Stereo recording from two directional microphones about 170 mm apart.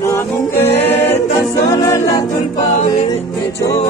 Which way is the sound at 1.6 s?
20° left (ahead or behind).